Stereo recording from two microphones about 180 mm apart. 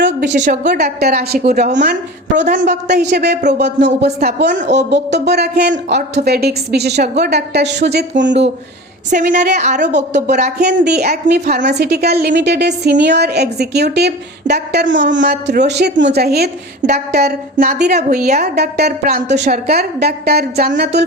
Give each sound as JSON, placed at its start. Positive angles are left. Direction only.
{"t": 0.3, "sound": "a woman's voice", "side_deg": -45}
{"t": 0.7, "sound": "a woman's voice", "side_deg": -65}
{"t": 9.0, "sound": "a woman's voice", "side_deg": -45}
{"t": 10.8, "sound": "a woman's voice", "side_deg": -65}
{"t": 17.9, "sound": "a woman's voice", "side_deg": -40}
{"t": 18.3, "sound": "a woman's voice", "side_deg": -65}